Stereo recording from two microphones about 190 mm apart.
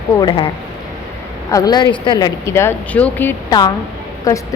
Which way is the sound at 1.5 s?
20° left (ahead or behind).